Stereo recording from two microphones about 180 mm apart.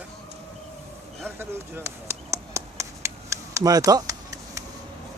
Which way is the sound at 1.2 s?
10° right (ahead or behind).